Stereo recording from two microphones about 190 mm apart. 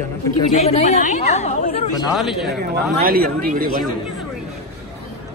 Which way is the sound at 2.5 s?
50° right (ahead or behind).